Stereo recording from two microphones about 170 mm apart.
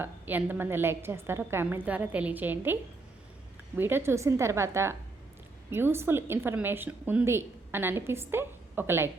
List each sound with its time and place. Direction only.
0.0 s a woman's voice: 10° right (ahead or behind)
3.8 s a woman's voice: 15° right (ahead or behind)